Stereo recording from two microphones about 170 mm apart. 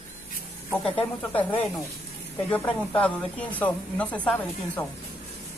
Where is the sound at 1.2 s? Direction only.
10° left (ahead or behind).